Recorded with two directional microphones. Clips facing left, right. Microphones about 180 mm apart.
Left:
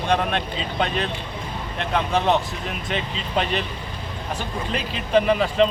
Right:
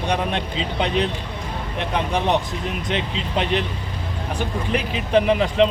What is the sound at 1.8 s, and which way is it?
Speech, 15° right (ahead or behind).